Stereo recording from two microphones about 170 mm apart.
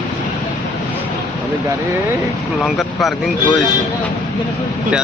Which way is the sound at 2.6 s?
Centre (ahead or behind).